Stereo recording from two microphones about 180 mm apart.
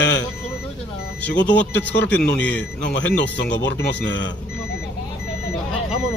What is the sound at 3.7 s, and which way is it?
Speech, 80° left.